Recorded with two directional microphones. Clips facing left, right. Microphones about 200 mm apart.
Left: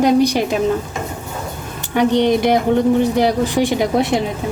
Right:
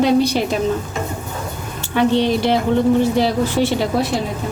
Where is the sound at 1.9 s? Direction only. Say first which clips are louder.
Left 2 dB; 15° left (ahead or behind).